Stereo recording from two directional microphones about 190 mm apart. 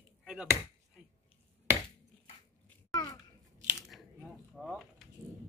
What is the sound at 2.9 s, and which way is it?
Babbling, 20° left (ahead or behind).